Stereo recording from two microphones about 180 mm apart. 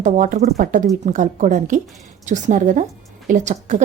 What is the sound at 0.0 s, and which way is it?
Speech, 45° right (ahead or behind).